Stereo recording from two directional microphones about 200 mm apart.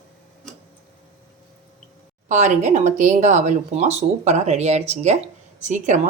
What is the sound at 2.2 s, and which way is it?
Speech, 35° right (ahead or behind).